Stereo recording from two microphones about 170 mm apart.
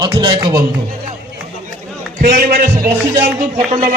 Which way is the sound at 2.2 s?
60° right (ahead or behind).